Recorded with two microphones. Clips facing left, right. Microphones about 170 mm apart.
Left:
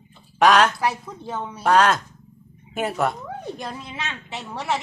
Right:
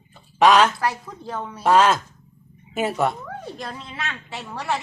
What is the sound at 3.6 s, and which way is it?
A woman's voice, 15° left (ahead or behind).